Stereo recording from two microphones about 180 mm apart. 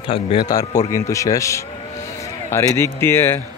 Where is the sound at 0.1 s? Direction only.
30° left (ahead or behind).